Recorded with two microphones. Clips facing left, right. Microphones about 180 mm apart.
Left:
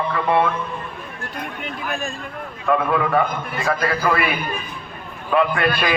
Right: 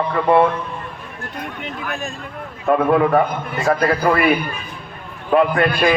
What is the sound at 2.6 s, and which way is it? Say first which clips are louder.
A man's voice: right 4 dB; 40° right (ahead or behind).